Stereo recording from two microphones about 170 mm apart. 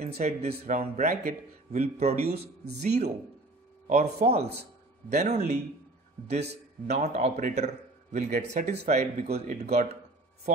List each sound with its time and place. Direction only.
0.0 s a man's voice: 40° right (ahead or behind)
6.9 s a man's voice: 40° right (ahead or behind)